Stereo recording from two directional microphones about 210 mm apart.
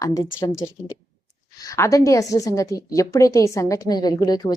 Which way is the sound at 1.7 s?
15° left (ahead or behind).